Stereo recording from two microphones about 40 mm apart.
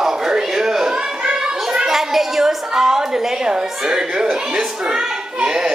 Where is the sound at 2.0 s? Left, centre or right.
Centre.